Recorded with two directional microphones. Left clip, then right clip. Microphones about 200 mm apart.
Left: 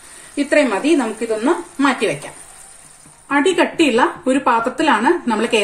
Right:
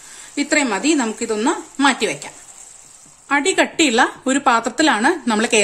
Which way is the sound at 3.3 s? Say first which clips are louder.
Left 1 dB; 50° right (ahead or behind).